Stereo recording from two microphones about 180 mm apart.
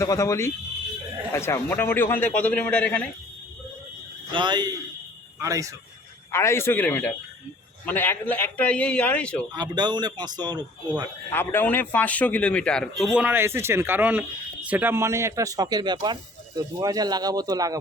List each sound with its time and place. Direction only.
0.0 s a man's voice: 15° left (ahead or behind)
4.3 s a man's voice: 25° right (ahead or behind)
6.3 s a man's voice: 15° left (ahead or behind)
9.6 s a man's voice: 25° right (ahead or behind)
11.3 s a man's voice: 10° left (ahead or behind); by 17.7 s 20° right (ahead or behind)